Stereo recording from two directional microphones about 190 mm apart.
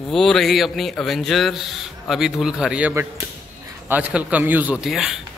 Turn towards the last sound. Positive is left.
turn(degrees=0)  # may be behind; listen again after turning